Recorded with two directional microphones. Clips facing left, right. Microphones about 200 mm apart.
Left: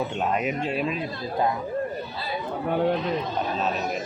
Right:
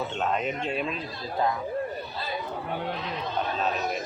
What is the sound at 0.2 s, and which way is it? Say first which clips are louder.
Speech: left 1 dB; 5° left (ahead or behind).